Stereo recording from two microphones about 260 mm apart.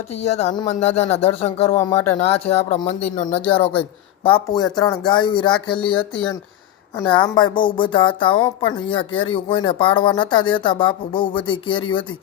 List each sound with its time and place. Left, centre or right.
0.2 s speech: left